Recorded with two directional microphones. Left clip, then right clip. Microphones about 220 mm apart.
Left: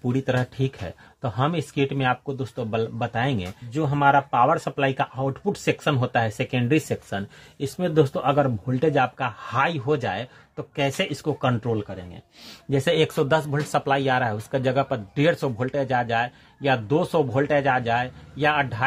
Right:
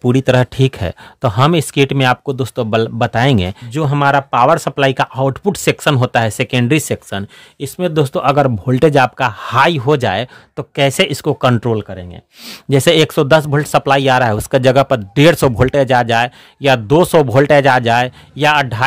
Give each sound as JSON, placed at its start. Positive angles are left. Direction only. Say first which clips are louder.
{"t": 0.0, "sound": "speech", "louder": "right 12 dB", "side_deg": -45}